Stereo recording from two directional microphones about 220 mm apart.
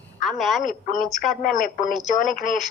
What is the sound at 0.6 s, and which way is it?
Speech, 35° left (ahead or behind).